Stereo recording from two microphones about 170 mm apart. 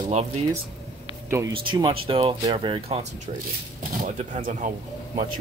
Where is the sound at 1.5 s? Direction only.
30° right (ahead or behind).